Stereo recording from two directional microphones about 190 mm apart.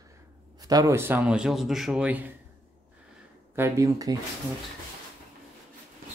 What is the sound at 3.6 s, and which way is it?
Speech, 15° right (ahead or behind).